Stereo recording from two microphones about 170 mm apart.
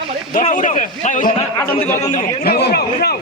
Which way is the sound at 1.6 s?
10° left (ahead or behind).